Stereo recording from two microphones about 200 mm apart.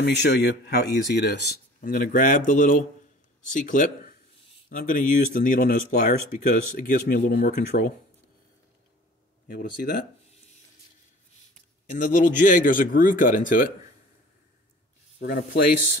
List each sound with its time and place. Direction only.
0.0 s speech: 60° left (ahead or behind); by 7.9 s 40° left (ahead or behind)
9.5 s speech: 50° left (ahead or behind)
11.9 s speech: 40° left (ahead or behind)